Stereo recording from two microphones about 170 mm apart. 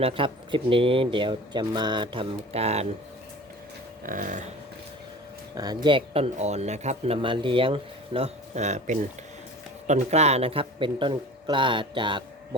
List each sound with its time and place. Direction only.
0.0 s speech: 30° right (ahead or behind)
4.0 s a sound: 50° right (ahead or behind)
5.5 s a man's voice: 25° right (ahead or behind)